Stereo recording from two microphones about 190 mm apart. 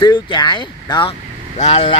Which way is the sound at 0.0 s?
25° left (ahead or behind).